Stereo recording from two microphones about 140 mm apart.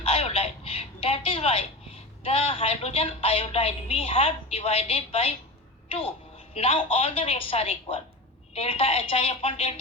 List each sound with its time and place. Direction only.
0.0 s a sound: 45° left (ahead or behind)
2.2 s a woman's voice: 40° left (ahead or behind)
6.5 s a woman's voice: 45° left (ahead or behind)